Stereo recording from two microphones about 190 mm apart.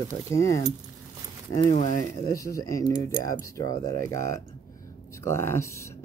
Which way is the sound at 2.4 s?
15° left (ahead or behind).